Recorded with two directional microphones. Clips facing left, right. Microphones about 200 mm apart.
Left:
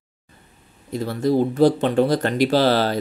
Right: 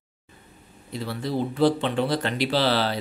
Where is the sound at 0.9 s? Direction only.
45° left (ahead or behind).